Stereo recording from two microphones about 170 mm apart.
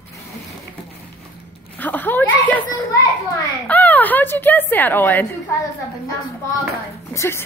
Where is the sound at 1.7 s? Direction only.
10° left (ahead or behind).